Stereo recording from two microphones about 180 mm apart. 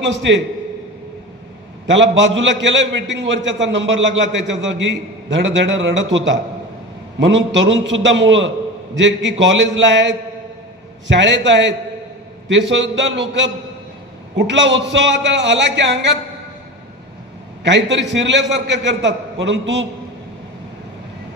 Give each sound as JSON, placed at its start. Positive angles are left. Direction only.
{"t": 1.9, "sound": "a man's voice", "side_deg": -90}
{"t": 17.6, "sound": "a man's voice", "side_deg": -90}